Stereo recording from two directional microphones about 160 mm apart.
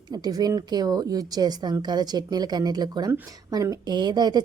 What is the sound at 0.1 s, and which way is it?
A woman's voice, 25° right (ahead or behind).